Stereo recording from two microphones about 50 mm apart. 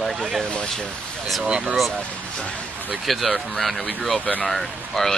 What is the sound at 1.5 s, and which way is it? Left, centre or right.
Speech, right.